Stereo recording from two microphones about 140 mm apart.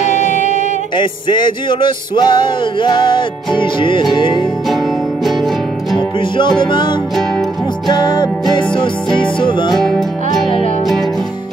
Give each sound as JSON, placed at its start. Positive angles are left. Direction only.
{"t": 0.1, "sound": "singing", "side_deg": 60}
{"t": 0.9, "sound": "music", "side_deg": 35}
{"t": 4.6, "sound": "music", "side_deg": 0}
{"t": 5.9, "sound": "music", "side_deg": 35}
{"t": 7.2, "sound": "music", "side_deg": 5}
{"t": 7.9, "sound": "music", "side_deg": 30}
{"t": 9.8, "sound": "music", "side_deg": 5}